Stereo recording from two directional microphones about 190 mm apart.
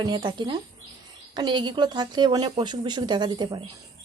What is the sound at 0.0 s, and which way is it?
A woman's voice, 25° right (ahead or behind).